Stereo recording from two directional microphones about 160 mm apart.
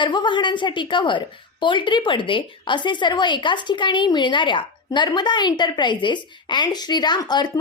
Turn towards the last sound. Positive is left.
turn(degrees=25)  # may be behind; listen again after turning